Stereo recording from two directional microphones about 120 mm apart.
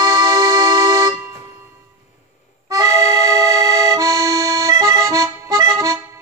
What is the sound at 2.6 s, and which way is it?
Accordion, 30° right (ahead or behind).